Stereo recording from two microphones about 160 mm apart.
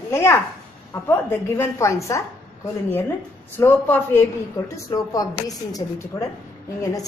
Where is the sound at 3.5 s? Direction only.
10° left (ahead or behind).